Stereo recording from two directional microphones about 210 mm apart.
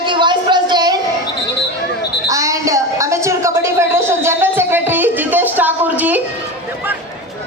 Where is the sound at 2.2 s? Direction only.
15° right (ahead or behind).